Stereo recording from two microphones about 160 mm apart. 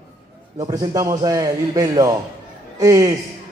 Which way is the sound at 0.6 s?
25° right (ahead or behind).